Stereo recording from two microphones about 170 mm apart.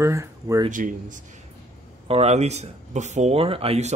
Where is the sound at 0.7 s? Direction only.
50° right (ahead or behind).